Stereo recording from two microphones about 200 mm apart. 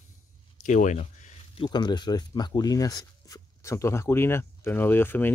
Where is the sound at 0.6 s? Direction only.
40° left (ahead or behind).